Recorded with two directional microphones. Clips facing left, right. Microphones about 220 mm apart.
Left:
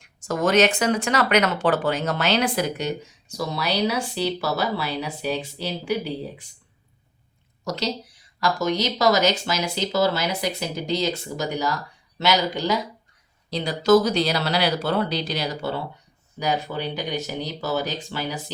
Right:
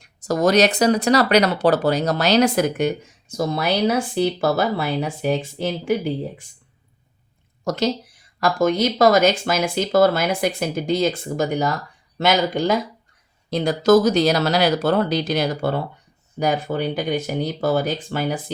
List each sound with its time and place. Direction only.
0.0 s speech: 40° right (ahead or behind)
7.6 s a woman's voice: 50° right (ahead or behind)